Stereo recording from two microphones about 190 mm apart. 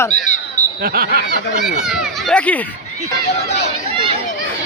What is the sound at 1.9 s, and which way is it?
Speech, 5° left (ahead or behind).